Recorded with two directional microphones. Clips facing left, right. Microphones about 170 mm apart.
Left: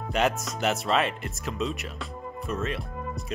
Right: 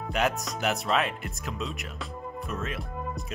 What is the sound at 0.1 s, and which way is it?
Speech, centre (ahead or behind).